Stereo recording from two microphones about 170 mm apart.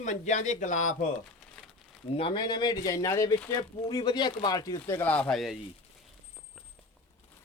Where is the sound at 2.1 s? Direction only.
30° left (ahead or behind).